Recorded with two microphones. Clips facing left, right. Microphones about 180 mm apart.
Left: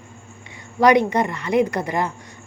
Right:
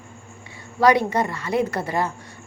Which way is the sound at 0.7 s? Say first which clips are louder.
Left 2 dB; 20° left (ahead or behind).